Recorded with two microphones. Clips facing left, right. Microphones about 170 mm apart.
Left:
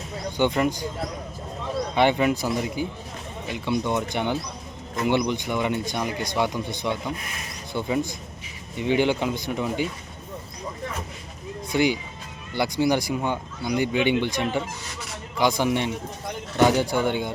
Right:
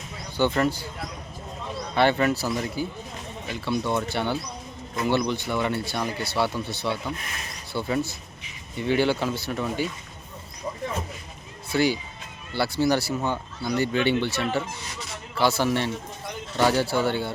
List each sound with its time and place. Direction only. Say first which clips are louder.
0.3 s speech: even; 15° left (ahead or behind)
2.0 s speech: even; 15° left (ahead or behind)
11.7 s speech: left 1 dB; 15° left (ahead or behind)